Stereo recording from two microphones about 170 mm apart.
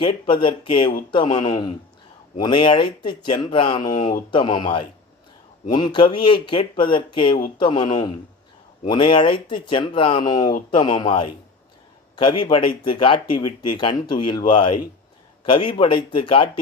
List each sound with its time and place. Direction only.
0.0 s speech: 30° left (ahead or behind)